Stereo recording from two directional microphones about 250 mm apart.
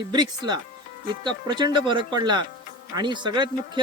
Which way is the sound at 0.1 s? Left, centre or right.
Centre.